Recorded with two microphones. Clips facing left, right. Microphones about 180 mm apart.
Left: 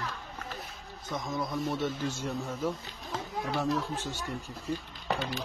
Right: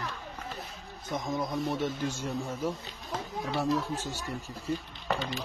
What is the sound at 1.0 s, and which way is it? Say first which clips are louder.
A man's voice: right 2 dB; 20° right (ahead or behind).